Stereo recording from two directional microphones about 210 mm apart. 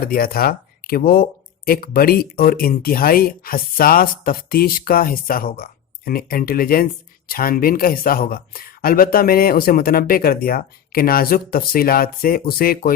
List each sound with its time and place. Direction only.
0.0 s speech: 45° left (ahead or behind)